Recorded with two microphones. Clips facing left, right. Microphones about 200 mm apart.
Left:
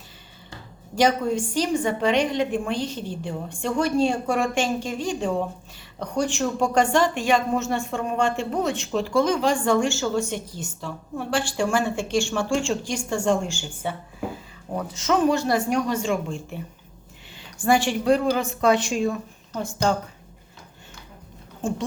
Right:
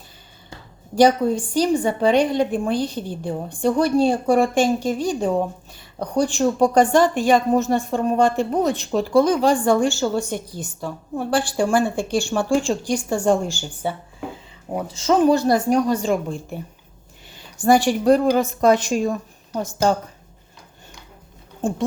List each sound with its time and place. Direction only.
0.9 s a woman's voice: 35° right (ahead or behind)
14.9 s a woman's voice: 30° right (ahead or behind)
17.6 s a woman's voice: 40° right (ahead or behind)